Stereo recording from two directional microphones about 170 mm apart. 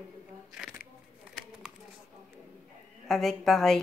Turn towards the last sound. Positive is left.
turn(degrees=0)  # may be behind; listen again after turning